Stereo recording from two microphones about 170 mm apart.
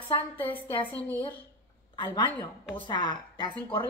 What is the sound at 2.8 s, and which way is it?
Speech, 25° left (ahead or behind).